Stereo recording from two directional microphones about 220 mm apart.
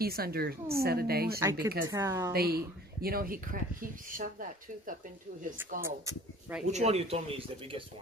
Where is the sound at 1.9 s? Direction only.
15° right (ahead or behind).